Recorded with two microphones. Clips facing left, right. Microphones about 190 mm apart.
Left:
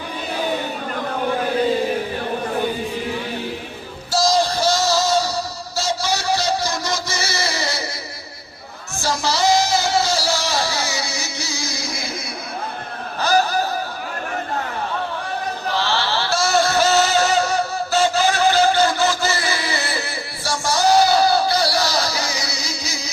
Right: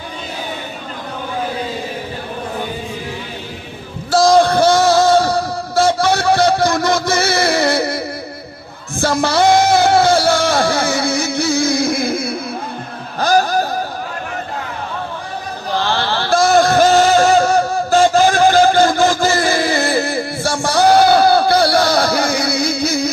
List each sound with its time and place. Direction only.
4.1 s music: 55° right (ahead or behind)
9.0 s music: 55° right (ahead or behind)
15.7 s music: 55° right (ahead or behind)